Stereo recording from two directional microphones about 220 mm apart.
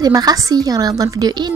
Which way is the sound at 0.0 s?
15° right (ahead or behind).